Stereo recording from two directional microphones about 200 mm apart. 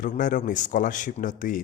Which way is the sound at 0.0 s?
40° left (ahead or behind).